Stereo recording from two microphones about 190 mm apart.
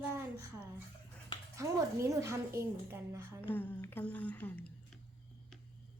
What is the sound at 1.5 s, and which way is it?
A woman's voice, 15° right (ahead or behind).